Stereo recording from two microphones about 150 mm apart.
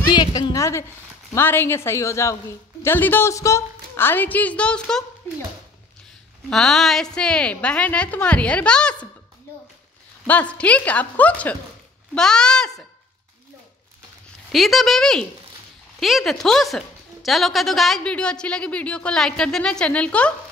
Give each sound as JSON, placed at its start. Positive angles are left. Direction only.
{"t": 0.1, "sound": "a woman's voice", "side_deg": 25}
{"t": 6.5, "sound": "a woman's voice", "side_deg": 5}
{"t": 10.2, "sound": "a woman's voice", "side_deg": 10}
{"t": 14.5, "sound": "speech", "side_deg": 0}